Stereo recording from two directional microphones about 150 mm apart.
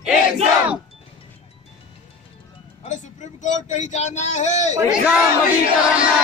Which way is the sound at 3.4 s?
55° left (ahead or behind).